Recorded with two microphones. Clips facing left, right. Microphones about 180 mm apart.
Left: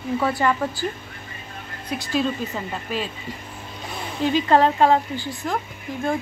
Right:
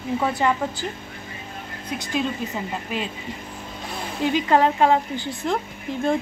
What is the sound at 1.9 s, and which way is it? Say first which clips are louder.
Speech: left 2 dB; 20° right (ahead or behind).